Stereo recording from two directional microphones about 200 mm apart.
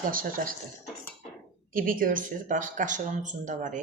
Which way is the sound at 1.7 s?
45° right (ahead or behind).